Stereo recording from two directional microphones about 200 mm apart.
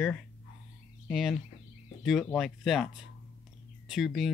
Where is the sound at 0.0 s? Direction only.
5° left (ahead or behind).